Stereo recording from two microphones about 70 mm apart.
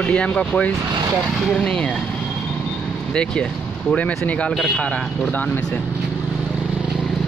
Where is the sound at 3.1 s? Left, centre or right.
Centre.